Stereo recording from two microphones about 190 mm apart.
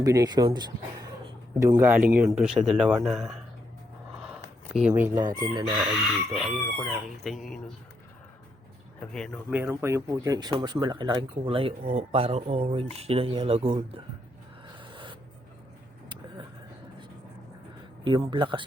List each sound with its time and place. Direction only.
0.0 s speech: 20° right (ahead or behind); by 3.4 s centre (ahead or behind)
4.7 s speech: 5° right (ahead or behind)
5.3 s speech: 20° right (ahead or behind)
6.3 s speech: centre (ahead or behind)
9.0 s speech: 5° left (ahead or behind)
9.5 s speech: 10° right (ahead or behind); by 14.0 s 30° right (ahead or behind)
14.8 s a sound: 25° right (ahead or behind)
18.0 s speech: 25° right (ahead or behind)